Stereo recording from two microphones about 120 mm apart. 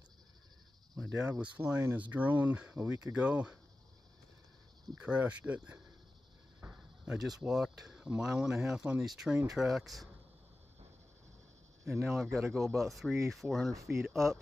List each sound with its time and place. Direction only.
0.9 s speech: 10° right (ahead or behind)
4.9 s speech: 10° right (ahead or behind)
6.6 s a sound: 25° right (ahead or behind)
7.1 s speech: 5° right (ahead or behind)
11.8 s speech: centre (ahead or behind)
13.7 s speech: 25° right (ahead or behind)
14.0 s speech: centre (ahead or behind)